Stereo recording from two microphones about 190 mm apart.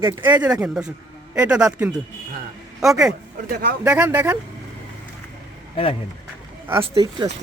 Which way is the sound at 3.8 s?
10° right (ahead or behind).